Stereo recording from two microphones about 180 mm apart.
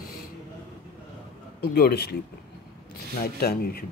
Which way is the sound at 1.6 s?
60° left (ahead or behind).